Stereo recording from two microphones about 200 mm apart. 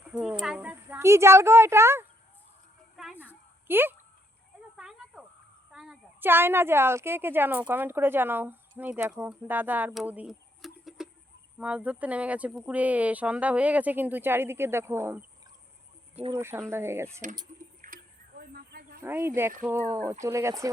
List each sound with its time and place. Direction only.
0.1 s a sound: 5° right (ahead or behind)
0.4 s speech: 5° right (ahead or behind)
2.9 s a sound: 5° right (ahead or behind)
3.7 s speech: 10° right (ahead or behind)
4.8 s snake: 5° right (ahead or behind)
5.7 s a woman's voice: 5° right (ahead or behind)
16.3 s speech: 15° right (ahead or behind)
17.8 s a sound: 45° right (ahead or behind)
19.0 s speech: 10° right (ahead or behind)